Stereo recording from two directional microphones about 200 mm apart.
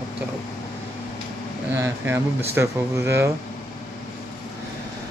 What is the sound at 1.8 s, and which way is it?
Speech, 15° right (ahead or behind).